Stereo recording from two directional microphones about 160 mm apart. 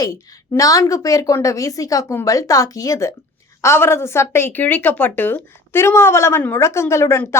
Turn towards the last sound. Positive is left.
turn(degrees=15)  # may be behind; listen again after turning